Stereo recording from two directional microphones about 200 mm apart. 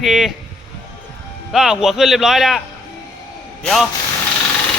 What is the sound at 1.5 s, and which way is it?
A man's voice, 5° right (ahead or behind).